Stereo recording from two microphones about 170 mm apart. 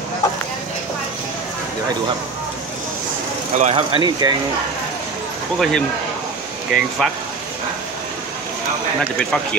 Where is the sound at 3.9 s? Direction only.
25° right (ahead or behind).